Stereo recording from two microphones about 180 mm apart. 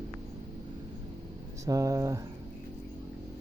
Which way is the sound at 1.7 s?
20° right (ahead or behind).